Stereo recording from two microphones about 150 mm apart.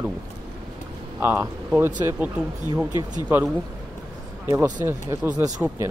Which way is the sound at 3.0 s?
25° right (ahead or behind).